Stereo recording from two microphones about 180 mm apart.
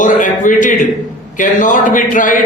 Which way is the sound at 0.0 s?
45° left (ahead or behind).